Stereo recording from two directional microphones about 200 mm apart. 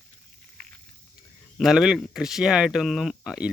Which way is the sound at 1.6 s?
Centre (ahead or behind).